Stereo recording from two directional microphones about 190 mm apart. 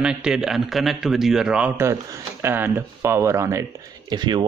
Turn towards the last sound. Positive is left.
turn(degrees=-25)  # may be behind; listen again after turning